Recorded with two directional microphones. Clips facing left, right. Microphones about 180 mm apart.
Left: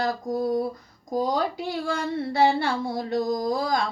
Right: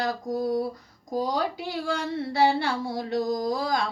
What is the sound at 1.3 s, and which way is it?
Speech, 50° left (ahead or behind).